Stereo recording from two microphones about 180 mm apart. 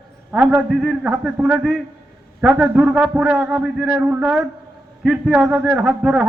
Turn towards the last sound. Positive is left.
turn(degrees=-5)  # may be behind; listen again after turning